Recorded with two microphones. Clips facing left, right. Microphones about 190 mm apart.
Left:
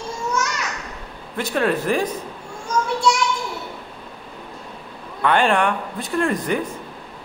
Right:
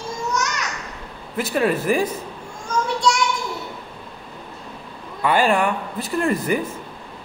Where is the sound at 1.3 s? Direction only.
5° right (ahead or behind).